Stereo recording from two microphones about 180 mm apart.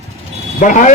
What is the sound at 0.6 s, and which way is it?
Speech, 45° left (ahead or behind).